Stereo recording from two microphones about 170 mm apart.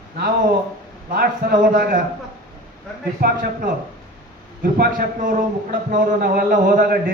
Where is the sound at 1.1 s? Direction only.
60° right (ahead or behind).